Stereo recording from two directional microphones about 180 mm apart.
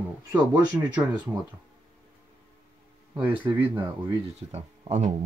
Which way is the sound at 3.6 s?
15° right (ahead or behind).